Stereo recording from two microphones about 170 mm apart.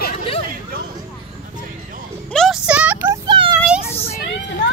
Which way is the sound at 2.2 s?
5° left (ahead or behind).